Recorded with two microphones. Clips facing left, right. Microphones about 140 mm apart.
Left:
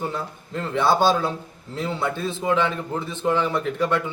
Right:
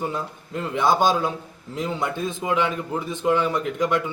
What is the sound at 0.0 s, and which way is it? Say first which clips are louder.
A man's voice: right 1 dB; 15° right (ahead or behind).